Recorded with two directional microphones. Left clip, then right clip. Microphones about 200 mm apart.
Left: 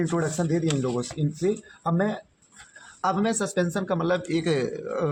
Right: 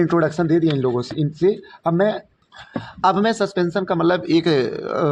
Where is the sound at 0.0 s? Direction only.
40° right (ahead or behind).